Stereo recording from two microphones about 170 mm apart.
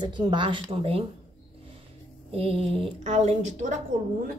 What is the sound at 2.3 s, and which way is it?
A woman's voice, 35° right (ahead or behind).